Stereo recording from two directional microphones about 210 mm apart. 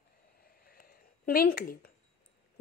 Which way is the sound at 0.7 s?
45° left (ahead or behind).